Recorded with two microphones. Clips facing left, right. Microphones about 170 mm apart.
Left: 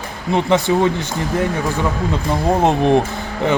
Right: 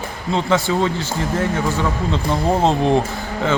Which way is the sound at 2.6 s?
15° left (ahead or behind).